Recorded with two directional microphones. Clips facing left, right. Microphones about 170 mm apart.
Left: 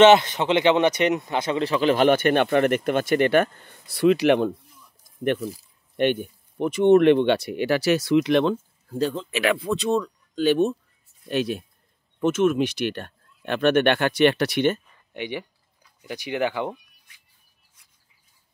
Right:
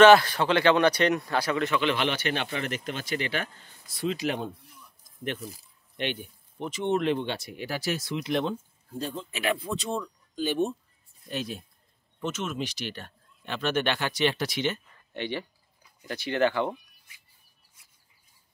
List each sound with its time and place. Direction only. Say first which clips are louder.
0.0 s speech: left 2 dB; 20° left (ahead or behind); by 4.5 s 70° left (ahead or behind)
5.9 s speech: left 11 dB; 50° left (ahead or behind); by 11.6 s 70° left (ahead or behind)
12.2 s speech: left 12 dB; 55° left (ahead or behind)
15.1 s speech: left 2 dB; 15° left (ahead or behind)
17.1 s bird: right 1 dB; 5° right (ahead or behind)